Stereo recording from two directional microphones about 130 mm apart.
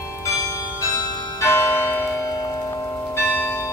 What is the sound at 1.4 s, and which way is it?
Music, 20° left (ahead or behind).